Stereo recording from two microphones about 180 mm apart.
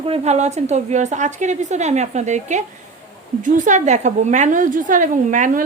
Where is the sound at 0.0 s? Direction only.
35° right (ahead or behind).